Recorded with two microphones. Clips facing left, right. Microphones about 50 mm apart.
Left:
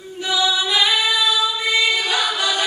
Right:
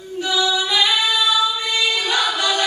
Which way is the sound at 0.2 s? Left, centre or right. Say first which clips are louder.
Even; centre.